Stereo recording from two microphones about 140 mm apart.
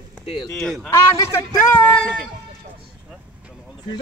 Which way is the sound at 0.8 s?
20° left (ahead or behind).